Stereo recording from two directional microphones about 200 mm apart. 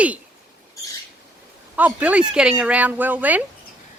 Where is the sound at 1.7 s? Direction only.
5° right (ahead or behind).